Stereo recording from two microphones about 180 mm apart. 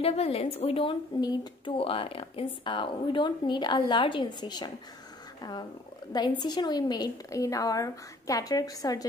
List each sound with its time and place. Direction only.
0.0 s a woman's voice: 35° left (ahead or behind)